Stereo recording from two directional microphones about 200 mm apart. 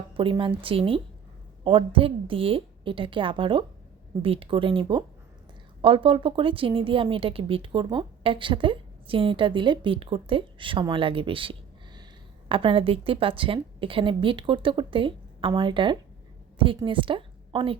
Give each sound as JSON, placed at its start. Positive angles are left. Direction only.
{"t": 0.2, "sound": "a woman's voice", "side_deg": -25}